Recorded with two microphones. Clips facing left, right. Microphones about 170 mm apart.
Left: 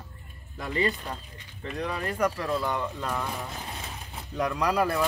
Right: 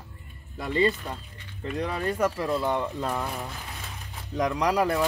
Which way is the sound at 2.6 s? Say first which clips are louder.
Right 3 dB; 25° right (ahead or behind).